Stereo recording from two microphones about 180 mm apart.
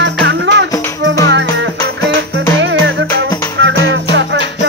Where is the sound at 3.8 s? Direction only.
85° right.